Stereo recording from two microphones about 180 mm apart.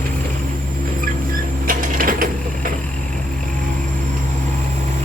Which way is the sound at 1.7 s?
50° right (ahead or behind).